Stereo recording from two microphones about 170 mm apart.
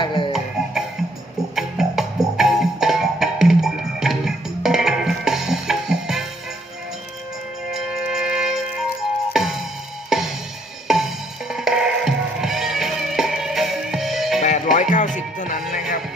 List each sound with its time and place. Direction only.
0.0 s music: 30° left (ahead or behind)
0.3 s music: centre (ahead or behind)
7.7 s music: 5° right (ahead or behind)
14.4 s music: 45° left (ahead or behind)